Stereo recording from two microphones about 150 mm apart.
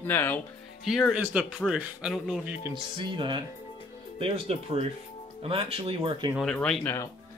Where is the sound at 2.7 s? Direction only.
30° right (ahead or behind).